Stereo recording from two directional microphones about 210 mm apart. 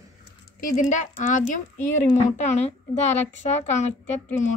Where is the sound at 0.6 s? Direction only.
40° left (ahead or behind).